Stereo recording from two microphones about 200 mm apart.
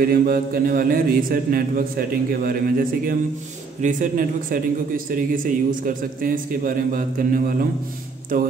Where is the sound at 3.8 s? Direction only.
45° right (ahead or behind).